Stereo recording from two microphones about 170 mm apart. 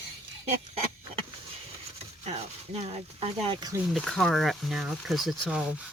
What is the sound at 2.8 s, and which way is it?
Speech, 40° right (ahead or behind).